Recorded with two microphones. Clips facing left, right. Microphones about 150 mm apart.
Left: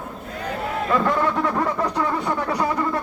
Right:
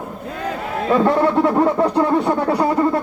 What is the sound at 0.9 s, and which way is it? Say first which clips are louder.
Speech: right 6 dB; 30° right (ahead or behind).